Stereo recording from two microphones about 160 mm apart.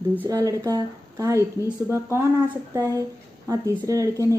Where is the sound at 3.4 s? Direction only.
20° right (ahead or behind).